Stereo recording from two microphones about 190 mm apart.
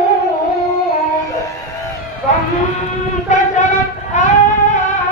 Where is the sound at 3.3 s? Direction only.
40° left (ahead or behind).